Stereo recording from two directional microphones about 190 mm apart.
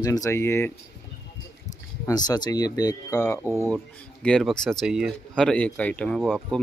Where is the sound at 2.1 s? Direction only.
20° left (ahead or behind).